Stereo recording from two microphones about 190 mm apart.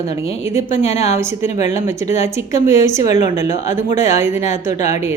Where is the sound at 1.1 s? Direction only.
15° right (ahead or behind).